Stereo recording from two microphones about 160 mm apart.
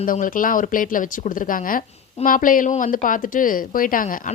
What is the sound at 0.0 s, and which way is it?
Speech, 60° left (ahead or behind).